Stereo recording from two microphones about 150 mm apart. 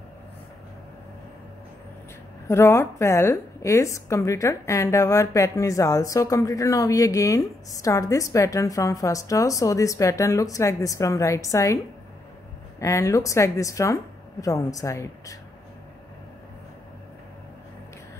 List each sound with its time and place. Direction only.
2.4 s a woman's voice: 15° left (ahead or behind)